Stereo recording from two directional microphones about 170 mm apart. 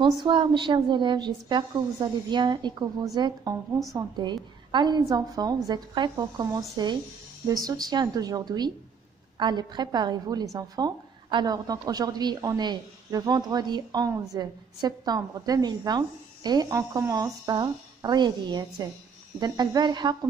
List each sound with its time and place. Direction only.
0.0 s a woman's voice: 30° right (ahead or behind)